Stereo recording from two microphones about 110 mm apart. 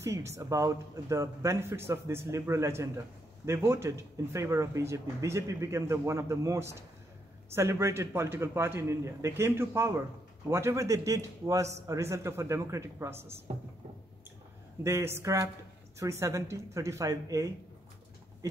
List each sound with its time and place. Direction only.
0.0 s speech: 25° right (ahead or behind)
14.8 s speech: 25° right (ahead or behind)